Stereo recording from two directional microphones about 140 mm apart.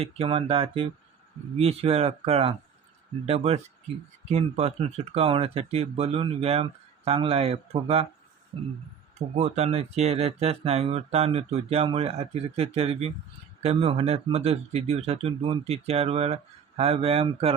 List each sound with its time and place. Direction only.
0.0 s speech: 40° right (ahead or behind)
9.1 s speech: 50° right (ahead or behind)